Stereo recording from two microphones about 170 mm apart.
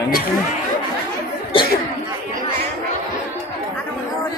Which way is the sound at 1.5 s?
30° left (ahead or behind).